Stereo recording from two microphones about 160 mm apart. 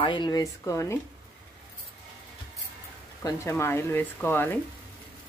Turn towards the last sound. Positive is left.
turn(degrees=10)  # may be behind; listen again after turning